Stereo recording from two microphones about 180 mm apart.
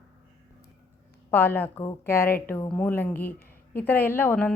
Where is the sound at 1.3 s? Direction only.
10° left (ahead or behind).